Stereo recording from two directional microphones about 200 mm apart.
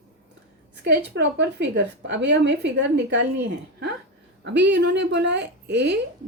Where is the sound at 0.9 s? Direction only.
60° right (ahead or behind).